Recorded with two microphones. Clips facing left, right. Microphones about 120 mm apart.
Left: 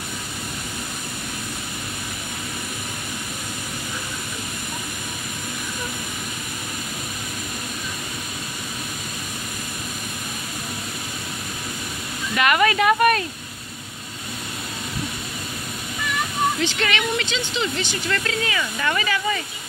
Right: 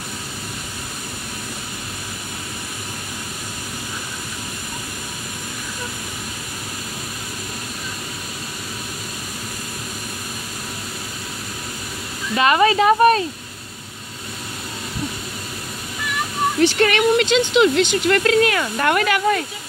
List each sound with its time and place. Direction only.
12.4 s speech: 30° right (ahead or behind)
16.5 s speech: 50° right (ahead or behind)
17.6 s speech: 70° right (ahead or behind)